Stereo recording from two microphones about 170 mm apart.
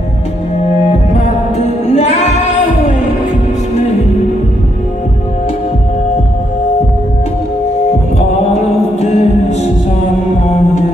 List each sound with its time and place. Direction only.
2.0 s music: 35° left (ahead or behind)
9.0 s music: 40° left (ahead or behind)